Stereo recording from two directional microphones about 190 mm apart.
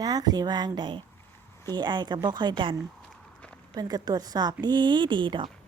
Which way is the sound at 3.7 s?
20° right (ahead or behind).